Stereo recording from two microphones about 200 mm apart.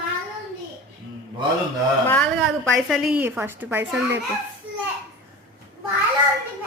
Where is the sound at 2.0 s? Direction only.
5° left (ahead or behind); by 4.2 s 10° right (ahead or behind).